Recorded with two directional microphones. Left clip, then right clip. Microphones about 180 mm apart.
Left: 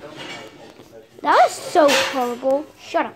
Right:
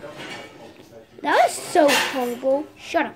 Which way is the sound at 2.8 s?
10° right (ahead or behind).